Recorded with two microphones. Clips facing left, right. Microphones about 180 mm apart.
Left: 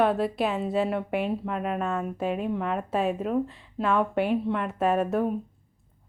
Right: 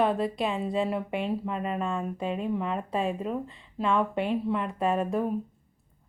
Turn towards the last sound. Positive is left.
turn(degrees=0)  # may be behind; listen again after turning